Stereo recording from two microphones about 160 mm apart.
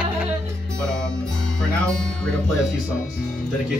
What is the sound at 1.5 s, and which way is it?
Music, 5° left (ahead or behind).